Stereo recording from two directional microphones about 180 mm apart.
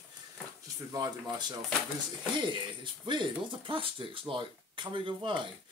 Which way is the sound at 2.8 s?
25° right (ahead or behind).